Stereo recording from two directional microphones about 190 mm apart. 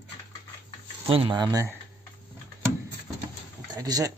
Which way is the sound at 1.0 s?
30° right (ahead or behind).